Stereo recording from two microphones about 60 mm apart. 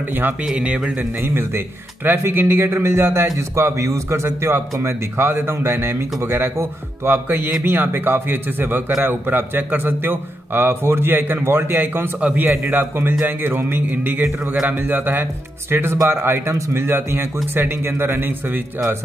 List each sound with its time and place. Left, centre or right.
0.5 s speech: centre
1.2 s a man's voice: right
12.2 s a man's voice: right
12.4 s a man's voice: right